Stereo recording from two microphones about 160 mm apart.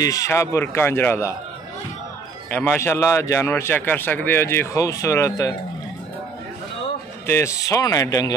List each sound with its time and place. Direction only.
0.0 s a man's voice: 20° left (ahead or behind)
2.5 s a man's voice: 10° left (ahead or behind)
7.2 s speech: 15° left (ahead or behind)